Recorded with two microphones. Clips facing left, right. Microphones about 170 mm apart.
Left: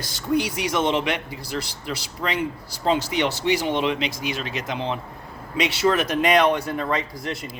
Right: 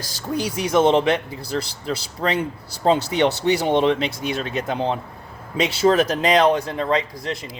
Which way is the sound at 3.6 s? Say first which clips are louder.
Right 5 dB; 40° right (ahead or behind).